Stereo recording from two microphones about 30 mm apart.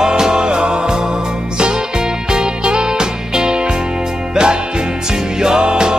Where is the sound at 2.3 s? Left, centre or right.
Right.